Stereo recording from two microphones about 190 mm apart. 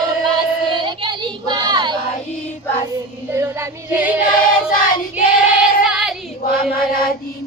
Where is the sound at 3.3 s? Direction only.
15° right (ahead or behind).